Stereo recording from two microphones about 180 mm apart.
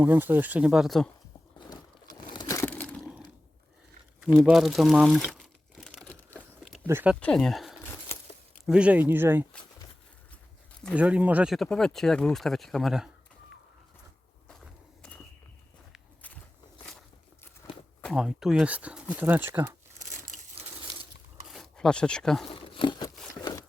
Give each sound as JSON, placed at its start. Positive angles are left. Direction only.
{"t": 0.0, "sound": "speech", "side_deg": -10}
{"t": 2.3, "sound": "a sound", "side_deg": 20}
{"t": 4.2, "sound": "speech", "side_deg": 0}
{"t": 5.3, "sound": "crumpling", "side_deg": 0}
{"t": 6.8, "sound": "speech", "side_deg": -10}
{"t": 7.2, "sound": "speech", "side_deg": 5}
{"t": 10.9, "sound": "speech", "side_deg": -10}
{"t": 14.4, "sound": "a sound", "side_deg": 5}
{"t": 18.0, "sound": "speech", "side_deg": -5}
{"t": 20.0, "sound": "crushing", "side_deg": -45}
{"t": 21.4, "sound": "speech", "side_deg": 0}
{"t": 22.6, "sound": "a sound", "side_deg": 25}